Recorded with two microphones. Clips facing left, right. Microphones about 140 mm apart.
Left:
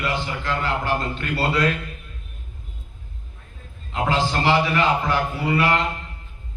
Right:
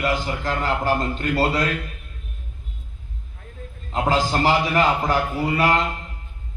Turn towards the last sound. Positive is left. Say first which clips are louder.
# right 1 dB
turn(degrees=-40)  # may be behind; listen again after turning